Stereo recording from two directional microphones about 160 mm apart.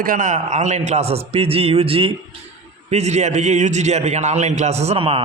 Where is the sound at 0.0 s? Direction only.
55° right (ahead or behind).